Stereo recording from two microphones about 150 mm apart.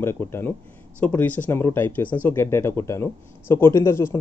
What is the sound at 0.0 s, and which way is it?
Speech, 15° left (ahead or behind).